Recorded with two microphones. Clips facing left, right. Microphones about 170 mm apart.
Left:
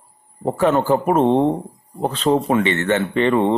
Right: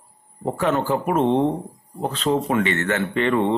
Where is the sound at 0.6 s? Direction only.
35° left (ahead or behind).